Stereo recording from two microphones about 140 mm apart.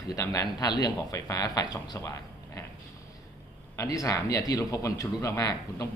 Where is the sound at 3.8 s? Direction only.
25° left (ahead or behind).